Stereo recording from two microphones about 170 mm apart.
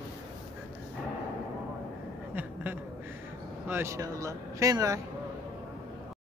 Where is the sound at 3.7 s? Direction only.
15° right (ahead or behind).